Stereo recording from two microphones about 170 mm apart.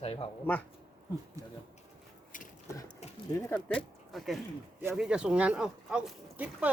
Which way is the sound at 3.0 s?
40° left (ahead or behind).